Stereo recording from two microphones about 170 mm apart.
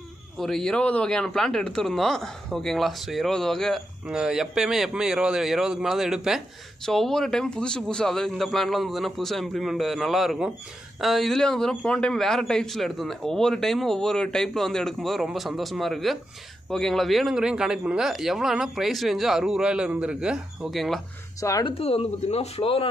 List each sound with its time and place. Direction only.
0.4 s a man's voice: centre (ahead or behind)
21.4 s speech: 20° left (ahead or behind)
21.7 s a man's voice: 35° left (ahead or behind)